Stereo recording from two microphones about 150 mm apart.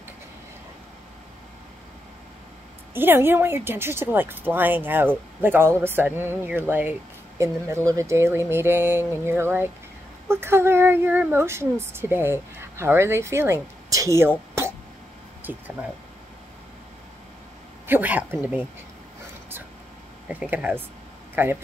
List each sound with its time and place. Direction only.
2.9 s speech: 15° right (ahead or behind)
15.5 s speech: 10° right (ahead or behind)
17.8 s speech: 10° right (ahead or behind)
20.2 s speech: 10° right (ahead or behind)